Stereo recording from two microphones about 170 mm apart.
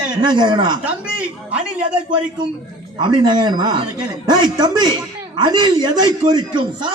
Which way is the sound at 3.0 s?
25° right (ahead or behind).